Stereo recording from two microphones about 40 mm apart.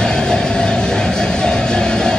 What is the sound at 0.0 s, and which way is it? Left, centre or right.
Music, centre.